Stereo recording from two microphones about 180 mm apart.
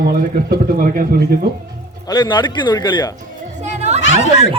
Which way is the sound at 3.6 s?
40° right (ahead or behind).